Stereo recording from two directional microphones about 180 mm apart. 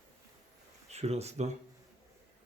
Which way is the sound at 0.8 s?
35° right (ahead or behind).